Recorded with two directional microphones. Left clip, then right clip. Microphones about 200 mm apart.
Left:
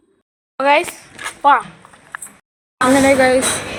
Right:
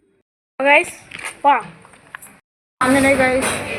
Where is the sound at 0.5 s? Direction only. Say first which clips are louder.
Even; 5° left (ahead or behind).